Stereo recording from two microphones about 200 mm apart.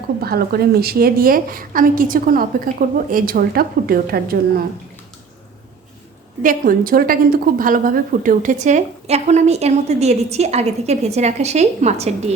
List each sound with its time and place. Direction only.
0.2 s a woman's voice: 50° right (ahead or behind)
6.4 s a woman's voice: 45° right (ahead or behind)